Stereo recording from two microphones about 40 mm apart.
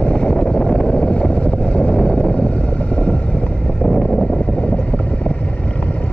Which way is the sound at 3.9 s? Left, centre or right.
Centre.